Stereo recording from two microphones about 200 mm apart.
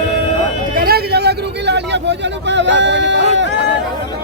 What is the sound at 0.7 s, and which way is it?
Vehicle, 50° right (ahead or behind).